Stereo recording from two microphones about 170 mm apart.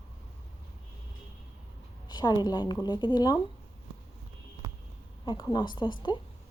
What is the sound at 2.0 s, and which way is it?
A woman's voice, 25° left (ahead or behind).